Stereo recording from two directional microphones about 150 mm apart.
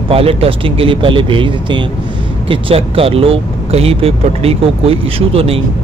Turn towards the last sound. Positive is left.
turn(degrees=-40)  # may be behind; listen again after turning